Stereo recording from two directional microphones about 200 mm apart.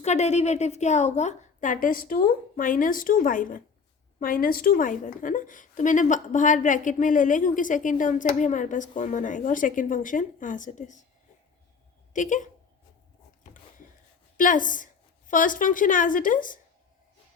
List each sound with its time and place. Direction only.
0.0 s a woman's voice: 35° left (ahead or behind)
12.1 s a woman's voice: 40° left (ahead or behind)
14.3 s a woman's voice: 40° left (ahead or behind)